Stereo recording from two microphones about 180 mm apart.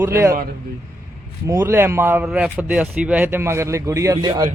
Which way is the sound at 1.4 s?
15° right (ahead or behind).